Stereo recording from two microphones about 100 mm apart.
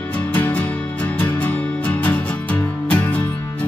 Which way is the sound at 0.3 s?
15° left (ahead or behind).